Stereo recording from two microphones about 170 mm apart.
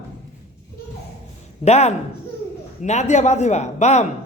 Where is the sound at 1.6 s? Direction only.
40° left (ahead or behind).